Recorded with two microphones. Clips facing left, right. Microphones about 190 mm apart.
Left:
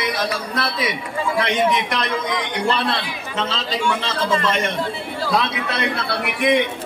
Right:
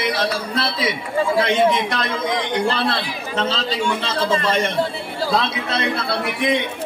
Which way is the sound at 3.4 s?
35° right (ahead or behind).